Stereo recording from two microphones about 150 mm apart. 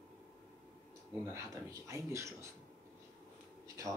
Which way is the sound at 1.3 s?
20° right (ahead or behind).